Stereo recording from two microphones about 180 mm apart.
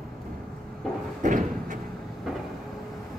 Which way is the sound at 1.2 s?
45° right (ahead or behind).